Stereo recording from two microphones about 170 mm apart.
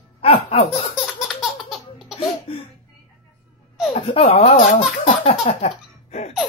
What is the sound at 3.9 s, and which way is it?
Speech, 35° left (ahead or behind).